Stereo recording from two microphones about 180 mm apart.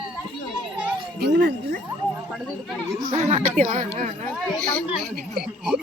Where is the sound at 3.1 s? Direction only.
40° right (ahead or behind).